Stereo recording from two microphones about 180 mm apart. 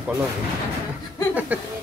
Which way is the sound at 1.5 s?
10° right (ahead or behind).